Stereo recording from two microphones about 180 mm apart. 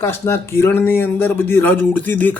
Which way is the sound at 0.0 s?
15° left (ahead or behind).